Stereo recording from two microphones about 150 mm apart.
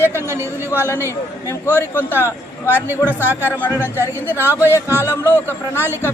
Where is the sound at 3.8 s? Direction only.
15° right (ahead or behind).